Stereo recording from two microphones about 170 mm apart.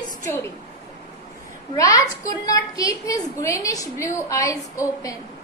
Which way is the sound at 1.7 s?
20° left (ahead or behind).